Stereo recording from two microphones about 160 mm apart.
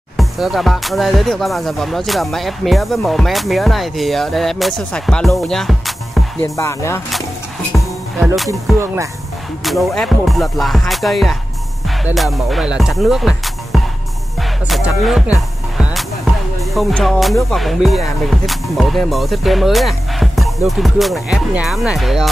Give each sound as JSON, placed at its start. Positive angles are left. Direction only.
{"t": 0.2, "sound": "speech", "side_deg": 0}
{"t": 6.4, "sound": "music", "side_deg": 20}
{"t": 8.5, "sound": "music", "side_deg": -15}
{"t": 9.7, "sound": "speech", "side_deg": 0}
{"t": 15.0, "sound": "speech", "side_deg": -5}
{"t": 15.8, "sound": "music", "side_deg": 0}
{"t": 16.7, "sound": "speech", "side_deg": 0}